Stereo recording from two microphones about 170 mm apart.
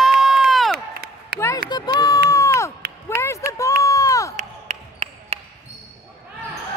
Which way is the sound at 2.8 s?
70° right (ahead or behind).